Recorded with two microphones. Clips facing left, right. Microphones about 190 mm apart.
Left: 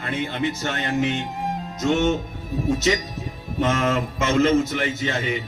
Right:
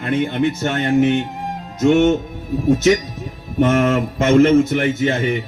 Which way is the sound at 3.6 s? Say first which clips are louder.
Right 6 dB; 55° right (ahead or behind).